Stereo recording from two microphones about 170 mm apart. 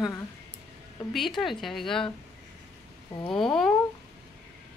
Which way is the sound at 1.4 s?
Centre (ahead or behind).